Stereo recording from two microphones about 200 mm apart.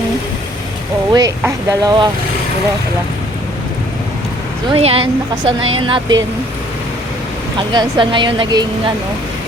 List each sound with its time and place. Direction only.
1.1 s speech: 20° right (ahead or behind)
4.7 s speech: 30° right (ahead or behind)
5.5 s speech: 90° right
5.8 s speech: 25° right (ahead or behind)
7.7 s speech: 20° right (ahead or behind)